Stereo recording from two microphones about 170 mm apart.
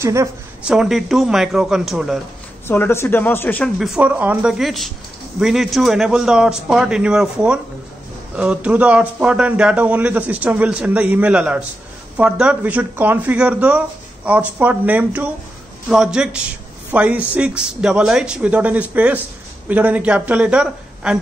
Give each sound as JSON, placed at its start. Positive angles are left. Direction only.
{"t": 0.0, "sound": "a man's voice", "side_deg": -15}
{"t": 0.7, "sound": "a man's voice", "side_deg": -5}
{"t": 2.7, "sound": "speech", "side_deg": 15}
{"t": 3.8, "sound": "a man's voice", "side_deg": -5}